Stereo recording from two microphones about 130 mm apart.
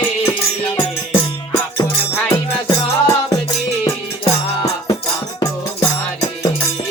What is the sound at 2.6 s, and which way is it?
Music, 30° left (ahead or behind).